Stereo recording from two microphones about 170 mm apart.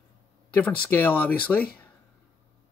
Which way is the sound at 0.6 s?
10° left (ahead or behind).